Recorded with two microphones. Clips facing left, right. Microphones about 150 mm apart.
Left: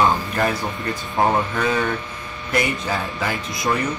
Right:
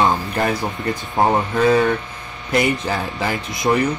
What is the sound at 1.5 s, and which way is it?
Speech, 30° right (ahead or behind).